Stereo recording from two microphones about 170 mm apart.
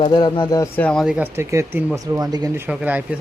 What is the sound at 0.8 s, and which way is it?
Speech, 5° left (ahead or behind).